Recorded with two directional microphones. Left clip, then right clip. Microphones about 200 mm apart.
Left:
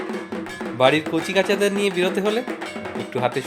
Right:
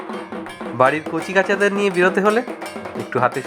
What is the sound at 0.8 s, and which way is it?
Speech, 10° right (ahead or behind).